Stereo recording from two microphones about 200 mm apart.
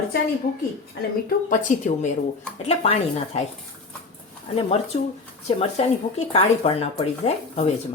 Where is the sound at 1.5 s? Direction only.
40° left (ahead or behind).